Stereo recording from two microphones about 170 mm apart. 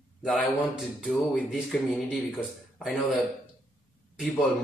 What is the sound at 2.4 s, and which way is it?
Speech, centre (ahead or behind).